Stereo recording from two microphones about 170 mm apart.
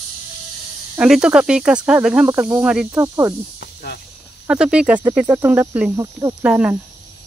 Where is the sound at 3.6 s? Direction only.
70° left (ahead or behind).